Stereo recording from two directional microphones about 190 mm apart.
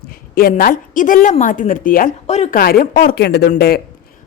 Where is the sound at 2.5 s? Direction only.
50° left (ahead or behind).